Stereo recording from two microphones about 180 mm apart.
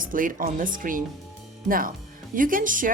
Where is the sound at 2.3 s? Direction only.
50° right (ahead or behind).